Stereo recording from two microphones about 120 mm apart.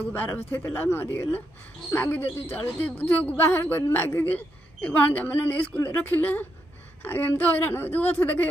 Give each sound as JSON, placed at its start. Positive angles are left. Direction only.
{"t": 0.1, "sound": "a woman's voice", "side_deg": 15}